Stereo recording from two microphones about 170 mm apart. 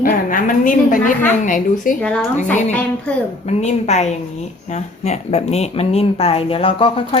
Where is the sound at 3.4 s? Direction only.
40° left (ahead or behind).